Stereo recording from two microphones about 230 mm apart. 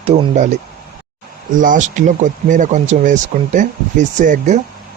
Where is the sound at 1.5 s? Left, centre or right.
Right.